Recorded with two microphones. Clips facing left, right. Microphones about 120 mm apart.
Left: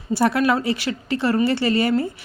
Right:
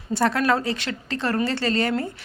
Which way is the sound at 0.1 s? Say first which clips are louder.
Left 2 dB; 10° left (ahead or behind).